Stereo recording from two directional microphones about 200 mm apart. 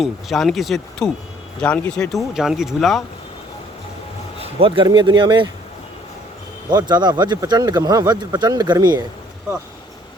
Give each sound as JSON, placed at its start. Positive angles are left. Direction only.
{"t": 0.0, "sound": "speech", "side_deg": 0}
{"t": 4.4, "sound": "speech", "side_deg": -30}
{"t": 6.7, "sound": "speech", "side_deg": -20}